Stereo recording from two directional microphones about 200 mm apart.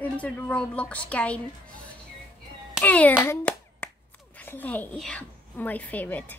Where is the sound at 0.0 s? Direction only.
5° left (ahead or behind).